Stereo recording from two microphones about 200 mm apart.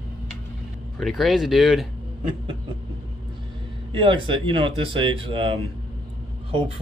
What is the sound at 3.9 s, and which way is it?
Speech, 25° right (ahead or behind).